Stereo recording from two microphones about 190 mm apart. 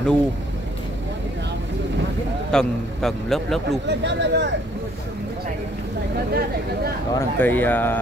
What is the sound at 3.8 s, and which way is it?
Speech, 65° right (ahead or behind).